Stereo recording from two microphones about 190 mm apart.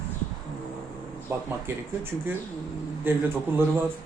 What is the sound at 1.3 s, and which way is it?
Speech, 15° right (ahead or behind).